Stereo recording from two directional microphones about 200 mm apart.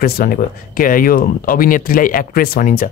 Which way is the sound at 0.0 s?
45° left (ahead or behind).